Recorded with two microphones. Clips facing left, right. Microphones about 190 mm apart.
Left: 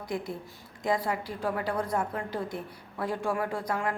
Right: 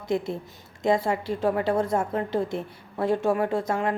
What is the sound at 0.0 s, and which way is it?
A woman's voice, 25° right (ahead or behind).